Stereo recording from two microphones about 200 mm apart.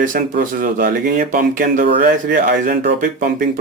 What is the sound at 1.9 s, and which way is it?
Speech, 55° right (ahead or behind).